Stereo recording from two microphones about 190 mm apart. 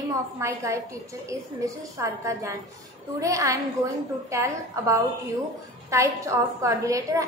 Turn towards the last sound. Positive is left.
turn(degrees=-15)  # may be behind; listen again after turning